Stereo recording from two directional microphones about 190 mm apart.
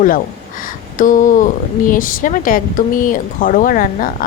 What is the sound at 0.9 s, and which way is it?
Speech, 45° left (ahead or behind).